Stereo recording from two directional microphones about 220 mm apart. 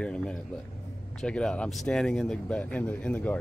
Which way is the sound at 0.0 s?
5° left (ahead or behind).